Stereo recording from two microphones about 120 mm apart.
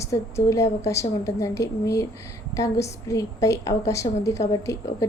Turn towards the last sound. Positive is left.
turn(degrees=25)  # may be behind; listen again after turning